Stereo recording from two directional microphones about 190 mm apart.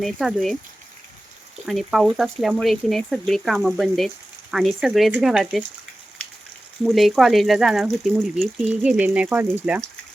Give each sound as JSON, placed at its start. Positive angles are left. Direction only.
{"t": 0.0, "sound": "speech", "side_deg": 0}
{"t": 1.6, "sound": "speech", "side_deg": 0}
{"t": 6.8, "sound": "speech", "side_deg": 0}